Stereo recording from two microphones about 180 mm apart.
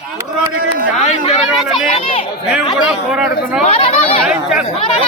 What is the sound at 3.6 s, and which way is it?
Speech, 35° left (ahead or behind).